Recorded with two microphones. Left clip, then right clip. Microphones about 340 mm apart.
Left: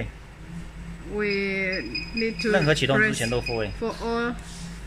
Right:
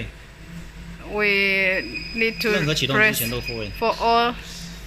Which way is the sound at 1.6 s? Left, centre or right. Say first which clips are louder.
Right 6 dB; right.